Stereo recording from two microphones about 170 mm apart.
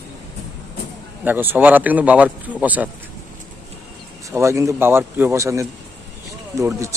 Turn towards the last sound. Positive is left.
turn(degrees=-15)  # may be behind; listen again after turning